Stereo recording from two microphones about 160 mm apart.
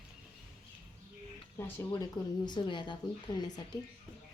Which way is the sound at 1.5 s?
15° left (ahead or behind).